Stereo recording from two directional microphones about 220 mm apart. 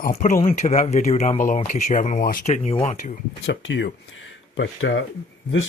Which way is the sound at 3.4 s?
55° left (ahead or behind).